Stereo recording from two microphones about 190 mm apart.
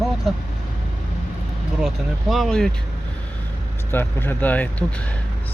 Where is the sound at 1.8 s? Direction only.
Centre (ahead or behind).